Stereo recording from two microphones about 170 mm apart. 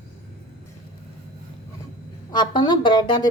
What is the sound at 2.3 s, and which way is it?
Speech, 25° left (ahead or behind).